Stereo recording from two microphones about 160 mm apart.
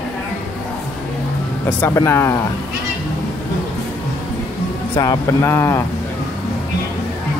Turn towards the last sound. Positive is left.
turn(degrees=15)  # may be behind; listen again after turning